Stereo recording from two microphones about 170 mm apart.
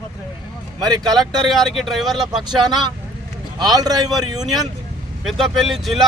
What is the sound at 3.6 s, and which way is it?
Speech, 25° right (ahead or behind).